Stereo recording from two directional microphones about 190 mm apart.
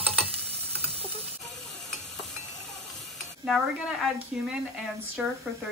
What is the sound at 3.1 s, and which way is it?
Speech, centre (ahead or behind).